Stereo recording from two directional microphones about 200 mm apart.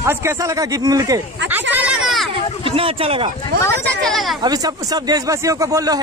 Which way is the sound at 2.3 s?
25° right (ahead or behind).